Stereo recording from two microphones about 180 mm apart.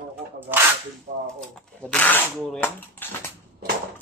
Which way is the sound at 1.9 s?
10° left (ahead or behind).